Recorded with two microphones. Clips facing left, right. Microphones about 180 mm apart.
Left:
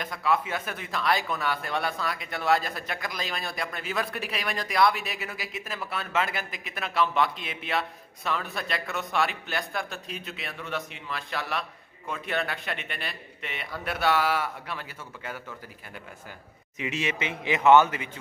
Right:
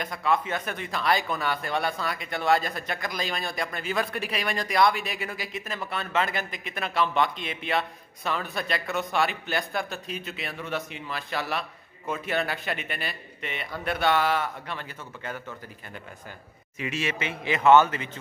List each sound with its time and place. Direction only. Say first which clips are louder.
0.0 s speech: right 1 dB; centre (ahead or behind)
16.7 s speech: even; 20° left (ahead or behind)